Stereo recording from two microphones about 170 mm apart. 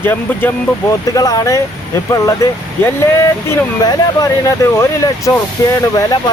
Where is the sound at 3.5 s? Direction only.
20° left (ahead or behind).